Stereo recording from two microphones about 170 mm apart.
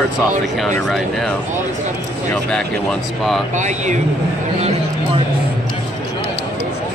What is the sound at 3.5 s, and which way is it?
Speech, 45° right (ahead or behind).